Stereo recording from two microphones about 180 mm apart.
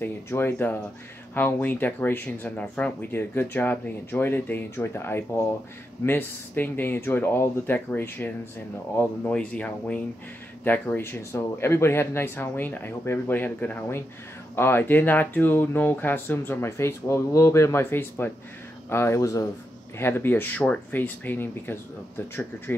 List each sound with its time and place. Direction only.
0.0 s speech: 10° left (ahead or behind)